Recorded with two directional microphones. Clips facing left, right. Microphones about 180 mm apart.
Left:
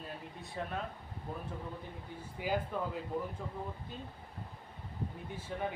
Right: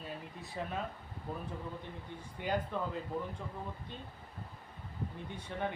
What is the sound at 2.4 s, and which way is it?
Speech, 5° left (ahead or behind).